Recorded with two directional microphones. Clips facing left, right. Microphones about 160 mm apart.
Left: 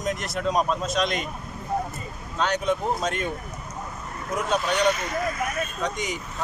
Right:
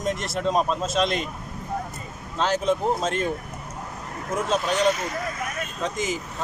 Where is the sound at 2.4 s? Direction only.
30° right (ahead or behind).